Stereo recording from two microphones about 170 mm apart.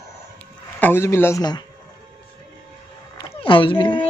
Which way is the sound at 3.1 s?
30° left (ahead or behind).